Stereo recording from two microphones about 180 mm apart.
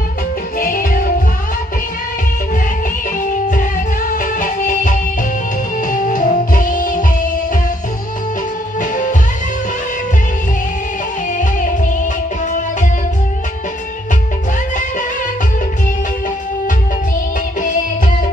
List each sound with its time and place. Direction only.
0.6 s music: 50° left (ahead or behind)
3.2 s music: 50° left (ahead or behind)